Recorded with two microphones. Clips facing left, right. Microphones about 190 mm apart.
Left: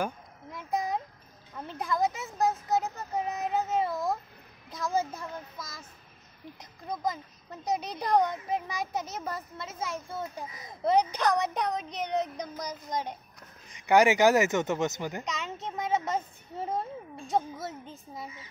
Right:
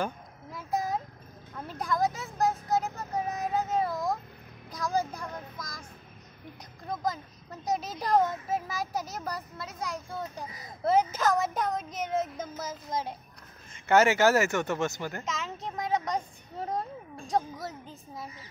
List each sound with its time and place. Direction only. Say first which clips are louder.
0.7 s a sound: even; centre (ahead or behind)
1.8 s speech: even; centre (ahead or behind)
3.9 s a sound: even; centre (ahead or behind)
4.6 s speech: even; centre (ahead or behind)
13.7 s speech: left 1 dB; 15° left (ahead or behind)
15.2 s speech: even; centre (ahead or behind)